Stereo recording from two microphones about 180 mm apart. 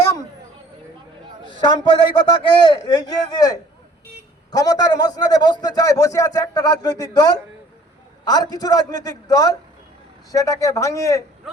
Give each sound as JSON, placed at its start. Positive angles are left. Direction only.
{"t": 1.6, "sound": "a man's voice", "side_deg": 25}
{"t": 8.3, "sound": "a man's voice", "side_deg": 20}